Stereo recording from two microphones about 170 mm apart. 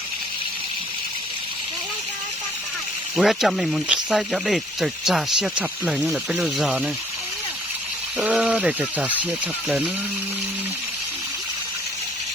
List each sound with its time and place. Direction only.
3.2 s speech: centre (ahead or behind)
8.2 s speech: 5° right (ahead or behind)